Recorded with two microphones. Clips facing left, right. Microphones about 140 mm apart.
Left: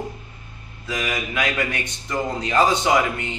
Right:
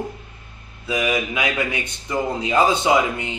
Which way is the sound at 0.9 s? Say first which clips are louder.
Right 5 dB; 15° right (ahead or behind).